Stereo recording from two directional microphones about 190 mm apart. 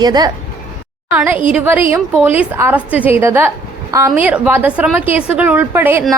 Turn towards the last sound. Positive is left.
turn(degrees=-10)  # may be behind; listen again after turning